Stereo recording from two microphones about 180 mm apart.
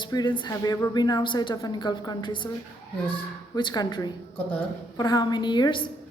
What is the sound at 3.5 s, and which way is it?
A woman's voice, 20° left (ahead or behind).